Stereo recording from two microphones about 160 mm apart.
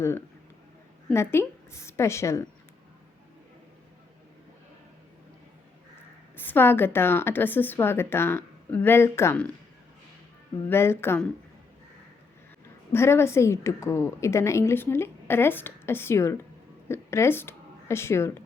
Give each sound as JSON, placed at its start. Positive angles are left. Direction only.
{"t": 1.1, "sound": "a woman's voice", "side_deg": 15}
{"t": 6.3, "sound": "a woman's voice", "side_deg": 10}
{"t": 10.7, "sound": "a woman's voice", "side_deg": 15}
{"t": 12.9, "sound": "a woman's voice", "side_deg": 15}